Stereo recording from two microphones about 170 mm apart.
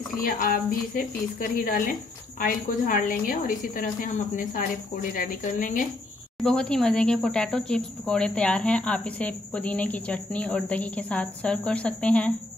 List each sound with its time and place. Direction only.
0.2 s a woman's voice: 55° left (ahead or behind)
6.4 s speech: 5° left (ahead or behind)